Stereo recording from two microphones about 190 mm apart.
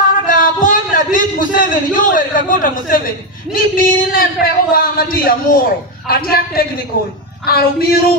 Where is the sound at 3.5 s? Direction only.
50° left (ahead or behind).